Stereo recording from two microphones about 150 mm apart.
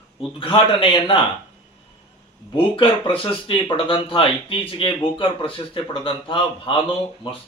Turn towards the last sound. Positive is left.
turn(degrees=35)  # may be behind; listen again after turning